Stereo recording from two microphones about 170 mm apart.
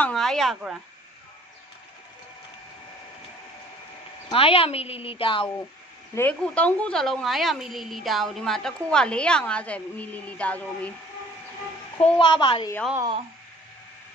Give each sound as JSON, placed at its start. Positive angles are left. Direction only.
{"t": 0.0, "sound": "a sound", "side_deg": 5}
{"t": 4.3, "sound": "a woman's voice", "side_deg": 35}
{"t": 6.1, "sound": "a woman's voice", "side_deg": 10}
{"t": 12.2, "sound": "a woman's voice", "side_deg": 30}